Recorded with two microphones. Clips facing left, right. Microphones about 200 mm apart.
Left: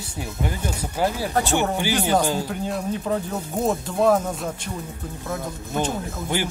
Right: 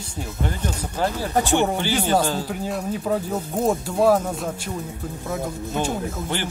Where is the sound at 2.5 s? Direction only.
5° right (ahead or behind).